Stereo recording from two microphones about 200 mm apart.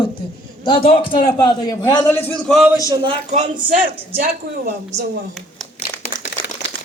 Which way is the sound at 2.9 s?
20° right (ahead or behind).